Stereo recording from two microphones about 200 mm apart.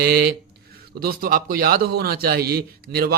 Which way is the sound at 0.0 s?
50° right (ahead or behind).